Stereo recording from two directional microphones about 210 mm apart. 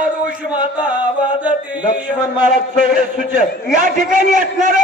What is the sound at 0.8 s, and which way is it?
Chant, 5° right (ahead or behind).